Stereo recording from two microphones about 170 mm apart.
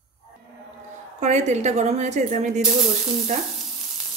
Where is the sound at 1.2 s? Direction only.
40° right (ahead or behind).